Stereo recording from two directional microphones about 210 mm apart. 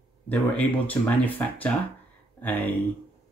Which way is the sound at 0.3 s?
5° left (ahead or behind).